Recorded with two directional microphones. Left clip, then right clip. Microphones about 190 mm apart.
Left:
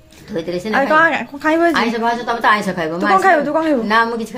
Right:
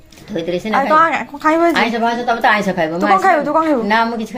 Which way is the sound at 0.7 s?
15° left (ahead or behind).